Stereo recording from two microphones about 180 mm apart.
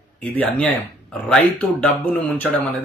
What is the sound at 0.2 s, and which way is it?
Speech, 5° left (ahead or behind).